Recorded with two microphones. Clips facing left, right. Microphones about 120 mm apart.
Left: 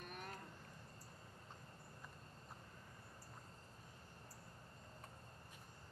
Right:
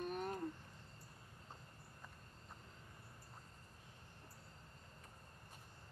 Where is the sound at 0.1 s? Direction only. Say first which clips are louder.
Right 9 dB; 30° right (ahead or behind).